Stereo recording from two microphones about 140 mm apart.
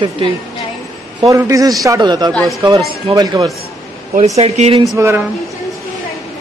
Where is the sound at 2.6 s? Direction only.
25° right (ahead or behind).